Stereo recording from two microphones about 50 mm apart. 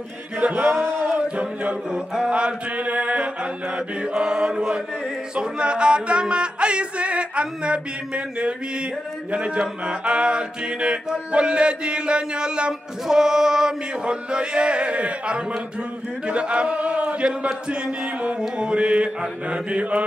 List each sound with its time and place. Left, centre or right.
0.4 s music: right
1.0 s chant: right
1.9 s music: centre
17.5 s speech: centre
18.4 s music: centre